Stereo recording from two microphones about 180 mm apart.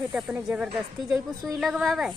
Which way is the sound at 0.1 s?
5° right (ahead or behind).